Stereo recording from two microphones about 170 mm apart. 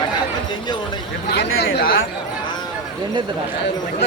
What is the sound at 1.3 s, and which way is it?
Chatter, 65° left (ahead or behind).